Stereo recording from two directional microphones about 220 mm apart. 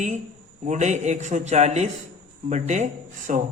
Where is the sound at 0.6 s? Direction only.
30° right (ahead or behind).